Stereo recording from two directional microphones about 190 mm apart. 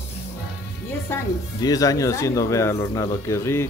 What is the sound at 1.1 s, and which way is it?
Speech, 10° left (ahead or behind).